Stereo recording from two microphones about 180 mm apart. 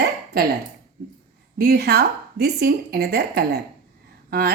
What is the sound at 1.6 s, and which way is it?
A woman's voice, 60° right (ahead or behind).